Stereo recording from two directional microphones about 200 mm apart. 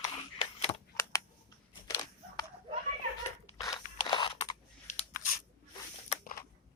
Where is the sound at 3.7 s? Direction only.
20° left (ahead or behind).